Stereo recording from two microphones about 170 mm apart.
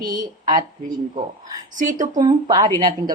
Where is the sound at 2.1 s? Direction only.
25° right (ahead or behind).